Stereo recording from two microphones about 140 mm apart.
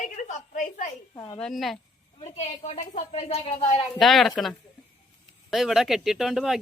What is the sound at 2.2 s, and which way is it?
A woman's voice, 50° left (ahead or behind).